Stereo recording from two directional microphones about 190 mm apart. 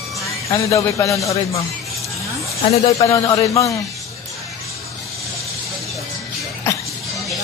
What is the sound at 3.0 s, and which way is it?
Speech, 15° left (ahead or behind).